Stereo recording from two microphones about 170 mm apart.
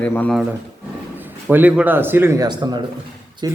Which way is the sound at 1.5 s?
10° right (ahead or behind).